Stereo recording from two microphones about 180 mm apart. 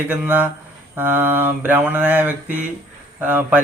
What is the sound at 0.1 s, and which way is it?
Speech, 10° right (ahead or behind).